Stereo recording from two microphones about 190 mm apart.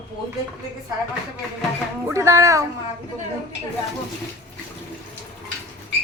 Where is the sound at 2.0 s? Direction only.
15° right (ahead or behind).